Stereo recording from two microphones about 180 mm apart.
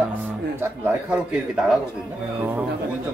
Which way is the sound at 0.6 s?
10° right (ahead or behind).